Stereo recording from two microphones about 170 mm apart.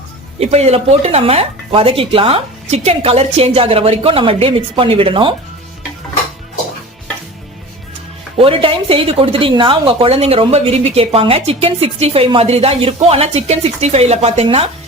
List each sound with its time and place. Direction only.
0.3 s speech: 40° right (ahead or behind)
8.4 s speech: 35° right (ahead or behind)